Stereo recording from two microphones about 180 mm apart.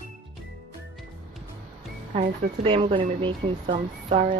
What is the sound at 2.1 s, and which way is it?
Speech, 30° right (ahead or behind).